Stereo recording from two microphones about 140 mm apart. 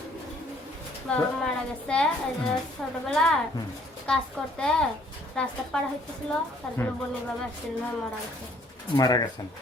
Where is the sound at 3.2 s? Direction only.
5° left (ahead or behind).